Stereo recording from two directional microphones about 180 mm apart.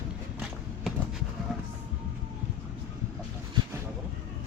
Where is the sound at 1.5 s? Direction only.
Centre (ahead or behind).